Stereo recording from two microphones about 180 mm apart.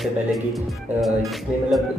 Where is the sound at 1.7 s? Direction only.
Centre (ahead or behind).